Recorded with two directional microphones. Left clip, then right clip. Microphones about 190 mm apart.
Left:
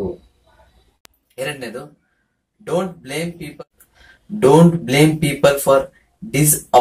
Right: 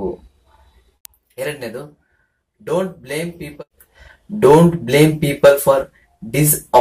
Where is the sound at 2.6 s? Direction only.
5° right (ahead or behind).